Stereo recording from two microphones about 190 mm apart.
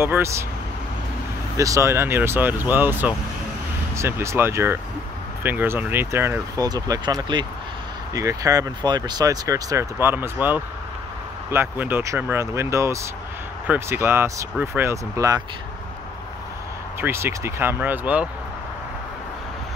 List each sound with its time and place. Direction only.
0.0 s speech: 15° right (ahead or behind)
1.6 s speech: 15° right (ahead or behind)
17.0 s speech: 15° right (ahead or behind)